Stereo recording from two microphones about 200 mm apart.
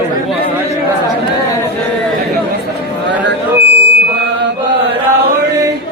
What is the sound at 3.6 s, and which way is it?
Music, 55° right (ahead or behind).